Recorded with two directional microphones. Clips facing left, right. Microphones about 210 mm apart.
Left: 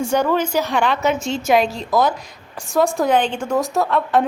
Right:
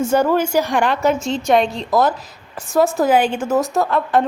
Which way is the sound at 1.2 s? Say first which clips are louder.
Right 1 dB; centre (ahead or behind).